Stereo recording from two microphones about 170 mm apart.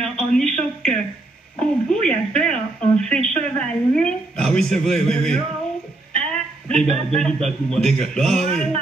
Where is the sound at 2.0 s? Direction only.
5° left (ahead or behind).